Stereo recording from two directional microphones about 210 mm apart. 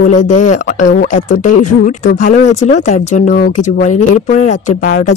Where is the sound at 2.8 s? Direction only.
35° left (ahead or behind).